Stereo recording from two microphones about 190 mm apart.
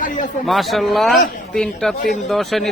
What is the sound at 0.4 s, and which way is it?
Speech, centre (ahead or behind).